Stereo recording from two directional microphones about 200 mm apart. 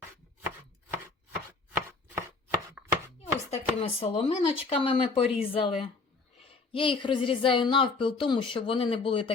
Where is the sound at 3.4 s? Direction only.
30° left (ahead or behind).